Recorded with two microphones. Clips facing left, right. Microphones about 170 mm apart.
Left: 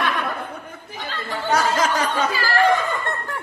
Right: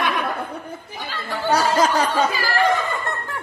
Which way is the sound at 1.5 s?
35° right (ahead or behind).